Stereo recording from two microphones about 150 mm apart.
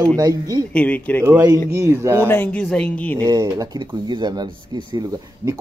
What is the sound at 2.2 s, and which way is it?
Speech, 10° left (ahead or behind).